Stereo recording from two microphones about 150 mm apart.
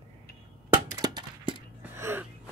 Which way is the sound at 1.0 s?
30° right (ahead or behind).